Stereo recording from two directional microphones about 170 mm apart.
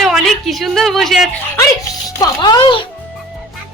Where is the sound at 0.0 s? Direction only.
Centre (ahead or behind).